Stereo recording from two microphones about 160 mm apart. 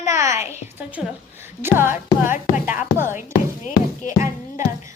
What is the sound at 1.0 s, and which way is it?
Speech, 5° right (ahead or behind).